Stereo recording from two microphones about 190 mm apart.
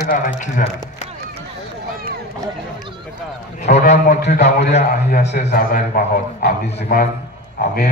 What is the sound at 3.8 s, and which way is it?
A man's voice, 50° left (ahead or behind).